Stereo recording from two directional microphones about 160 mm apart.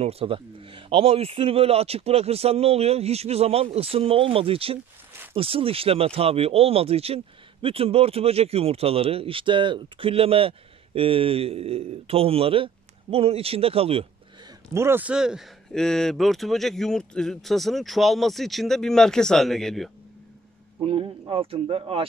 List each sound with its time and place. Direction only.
0.0 s speech: 35° right (ahead or behind)
14.7 s speech: 15° right (ahead or behind); by 19.9 s centre (ahead or behind)
20.8 s speech: 35° right (ahead or behind)